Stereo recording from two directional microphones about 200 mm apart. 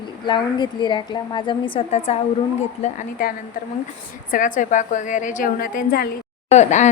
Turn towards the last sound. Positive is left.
turn(degrees=35)  # may be behind; listen again after turning